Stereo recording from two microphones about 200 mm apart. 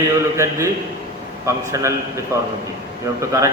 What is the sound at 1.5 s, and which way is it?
A man's voice, 15° right (ahead or behind).